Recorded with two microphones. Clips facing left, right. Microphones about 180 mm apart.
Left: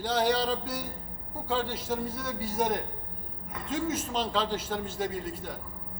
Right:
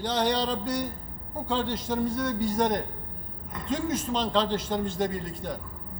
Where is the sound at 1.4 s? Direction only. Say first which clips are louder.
Right 1 dB; 5° left (ahead or behind).